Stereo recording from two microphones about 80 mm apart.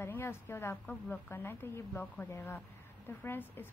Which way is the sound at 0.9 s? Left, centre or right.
Left.